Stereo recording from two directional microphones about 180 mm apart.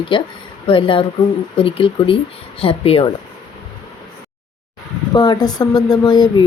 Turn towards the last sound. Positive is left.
turn(degrees=20)  # may be behind; listen again after turning